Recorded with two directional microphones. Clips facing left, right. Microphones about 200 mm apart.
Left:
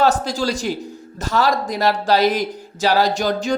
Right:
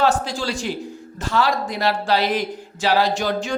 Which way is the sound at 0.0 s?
40° left (ahead or behind).